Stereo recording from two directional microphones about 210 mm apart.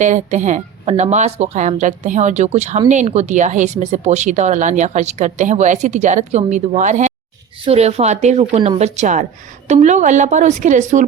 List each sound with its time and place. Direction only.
0.0 s speech: 35° right (ahead or behind)